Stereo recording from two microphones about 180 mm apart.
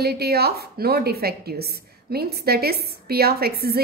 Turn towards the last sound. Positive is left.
turn(degrees=-60)  # may be behind; listen again after turning